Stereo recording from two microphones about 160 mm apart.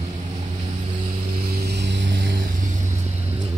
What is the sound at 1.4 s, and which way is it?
Vehicle, 90° right.